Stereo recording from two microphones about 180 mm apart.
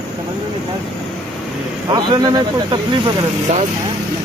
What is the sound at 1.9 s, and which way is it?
Speech, 20° right (ahead or behind).